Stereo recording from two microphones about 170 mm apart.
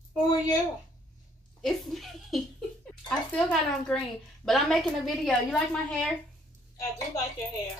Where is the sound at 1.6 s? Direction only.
Centre (ahead or behind).